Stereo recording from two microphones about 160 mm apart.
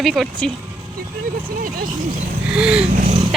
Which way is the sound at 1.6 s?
65° right (ahead or behind).